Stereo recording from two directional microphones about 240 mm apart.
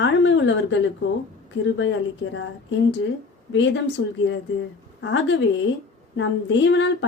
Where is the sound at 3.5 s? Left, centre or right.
Left.